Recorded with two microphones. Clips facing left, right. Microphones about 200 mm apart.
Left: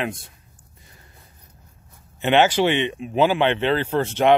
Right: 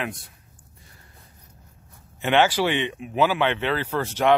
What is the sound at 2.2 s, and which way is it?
Speech, 20° left (ahead or behind).